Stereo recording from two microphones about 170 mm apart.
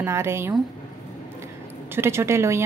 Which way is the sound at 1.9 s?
15° right (ahead or behind).